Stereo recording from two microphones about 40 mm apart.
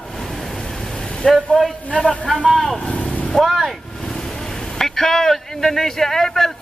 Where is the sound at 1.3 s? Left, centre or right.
Centre.